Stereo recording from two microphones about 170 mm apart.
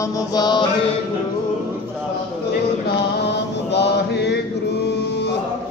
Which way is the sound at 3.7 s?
85° left.